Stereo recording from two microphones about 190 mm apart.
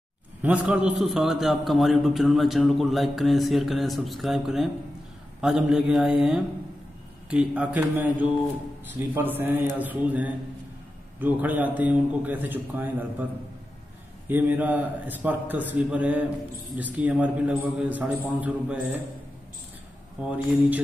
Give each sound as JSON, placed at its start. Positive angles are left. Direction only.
{"t": 0.4, "sound": "a man's voice", "side_deg": -10}
{"t": 14.2, "sound": "a man's voice", "side_deg": -10}
{"t": 20.2, "sound": "a man's voice", "side_deg": -5}